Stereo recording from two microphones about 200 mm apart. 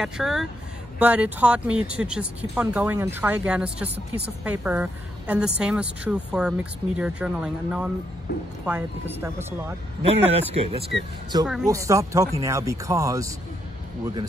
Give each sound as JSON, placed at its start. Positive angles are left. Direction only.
{"t": 0.0, "sound": "speech", "side_deg": 0}
{"t": 10.0, "sound": "speech", "side_deg": -30}
{"t": 11.6, "sound": "speech", "side_deg": -15}